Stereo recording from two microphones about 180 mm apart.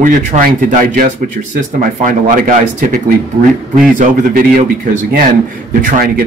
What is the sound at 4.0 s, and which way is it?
Speech, 50° right (ahead or behind).